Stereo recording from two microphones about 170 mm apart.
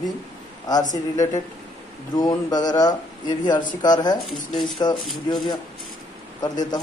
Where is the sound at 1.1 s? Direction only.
20° left (ahead or behind).